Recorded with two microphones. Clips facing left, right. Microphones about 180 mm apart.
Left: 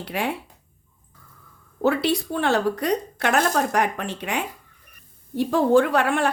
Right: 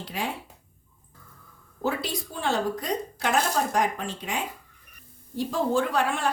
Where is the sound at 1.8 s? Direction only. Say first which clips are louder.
Left 8 dB; 70° left (ahead or behind).